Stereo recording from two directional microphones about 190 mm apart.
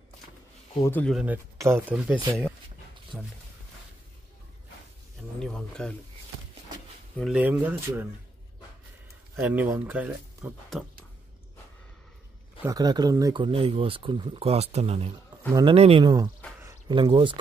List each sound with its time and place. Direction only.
0.8 s speech: 10° left (ahead or behind)
1.1 s speech: 10° right (ahead or behind)
5.4 s speech: 5° left (ahead or behind)
7.2 s speech: 5° right (ahead or behind)
9.4 s speech: 10° right (ahead or behind)
12.6 s speech: 20° right (ahead or behind)